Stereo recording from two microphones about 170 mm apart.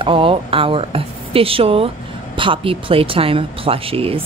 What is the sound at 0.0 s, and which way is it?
Speech, 30° right (ahead or behind).